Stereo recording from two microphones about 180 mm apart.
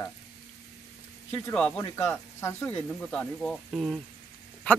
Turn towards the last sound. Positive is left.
turn(degrees=10)  # may be behind; listen again after turning